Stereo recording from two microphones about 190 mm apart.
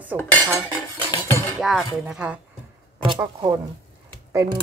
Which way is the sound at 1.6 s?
Centre (ahead or behind).